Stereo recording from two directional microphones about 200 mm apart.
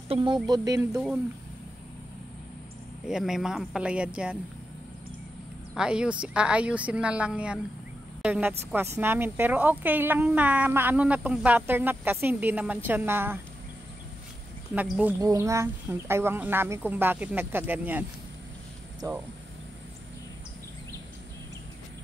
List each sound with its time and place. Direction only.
0.1 s speech: 25° right (ahead or behind)
3.1 s speech: 5° right (ahead or behind)
5.8 s speech: 5° right (ahead or behind)
14.8 s speech: 10° right (ahead or behind)